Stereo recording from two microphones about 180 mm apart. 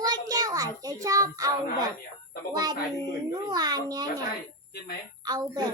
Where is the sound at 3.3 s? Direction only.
20° right (ahead or behind).